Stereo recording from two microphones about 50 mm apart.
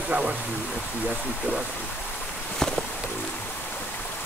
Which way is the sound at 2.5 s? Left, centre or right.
Centre.